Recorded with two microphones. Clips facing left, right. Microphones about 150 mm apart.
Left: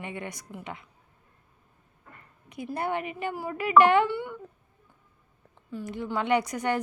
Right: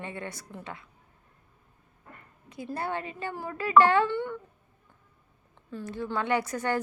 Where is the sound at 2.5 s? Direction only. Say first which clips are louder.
Left 2 dB; 20° left (ahead or behind).